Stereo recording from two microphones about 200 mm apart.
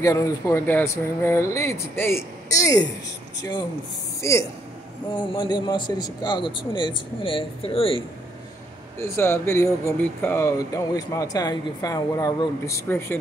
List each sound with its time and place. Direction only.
0.0 s speech: 15° left (ahead or behind)
9.0 s speech: 10° left (ahead or behind)